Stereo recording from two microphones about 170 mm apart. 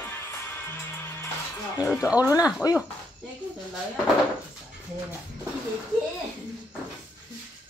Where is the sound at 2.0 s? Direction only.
10° right (ahead or behind).